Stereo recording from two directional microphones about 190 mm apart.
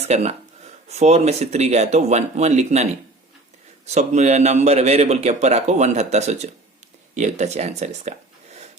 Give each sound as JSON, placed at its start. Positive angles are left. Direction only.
{"t": 0.1, "sound": "a man's voice", "side_deg": -35}